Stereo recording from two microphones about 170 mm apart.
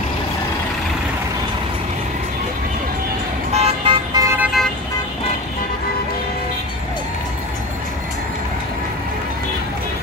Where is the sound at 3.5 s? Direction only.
35° right (ahead or behind).